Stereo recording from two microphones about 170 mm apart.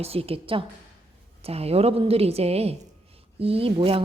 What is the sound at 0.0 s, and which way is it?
Speech, 35° right (ahead or behind).